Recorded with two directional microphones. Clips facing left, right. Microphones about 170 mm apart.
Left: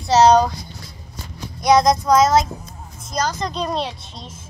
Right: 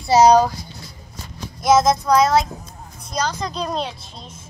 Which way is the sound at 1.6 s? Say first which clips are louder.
Left 1 dB; centre (ahead or behind).